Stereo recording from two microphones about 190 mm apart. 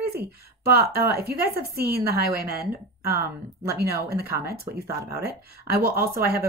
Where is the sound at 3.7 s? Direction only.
55° right (ahead or behind).